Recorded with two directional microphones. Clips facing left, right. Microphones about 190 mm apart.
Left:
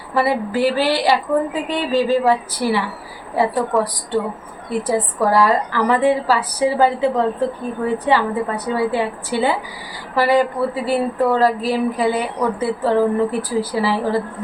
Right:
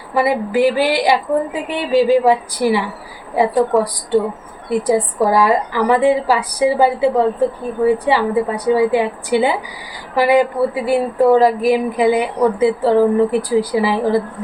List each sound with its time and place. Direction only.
0.1 s a woman's voice: 15° right (ahead or behind)
4.8 s a woman's voice: 15° right (ahead or behind)